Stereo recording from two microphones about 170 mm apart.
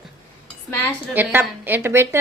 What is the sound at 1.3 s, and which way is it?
Speech, 10° right (ahead or behind).